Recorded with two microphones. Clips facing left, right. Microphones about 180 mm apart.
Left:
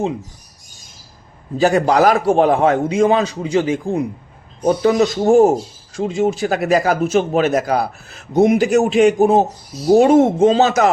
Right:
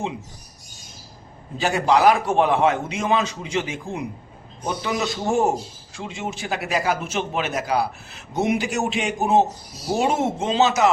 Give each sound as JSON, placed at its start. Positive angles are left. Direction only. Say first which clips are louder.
{"t": 1.5, "sound": "a man's voice", "louder": "left 6 dB", "side_deg": 40}